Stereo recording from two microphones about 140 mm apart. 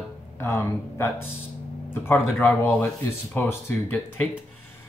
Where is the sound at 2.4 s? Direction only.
15° left (ahead or behind).